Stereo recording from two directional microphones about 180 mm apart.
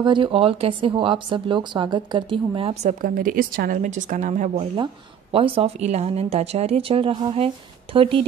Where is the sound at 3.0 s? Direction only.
50° right (ahead or behind).